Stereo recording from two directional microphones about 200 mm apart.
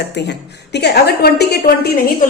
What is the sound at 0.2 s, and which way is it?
A woman's voice, 60° left (ahead or behind).